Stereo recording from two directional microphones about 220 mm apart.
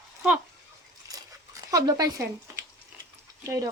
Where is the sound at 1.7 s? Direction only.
15° right (ahead or behind).